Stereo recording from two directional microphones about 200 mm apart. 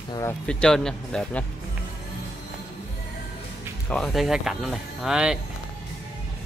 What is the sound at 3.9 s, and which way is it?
Speech, centre (ahead or behind).